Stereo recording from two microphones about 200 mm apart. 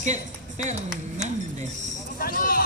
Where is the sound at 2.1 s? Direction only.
45° left (ahead or behind).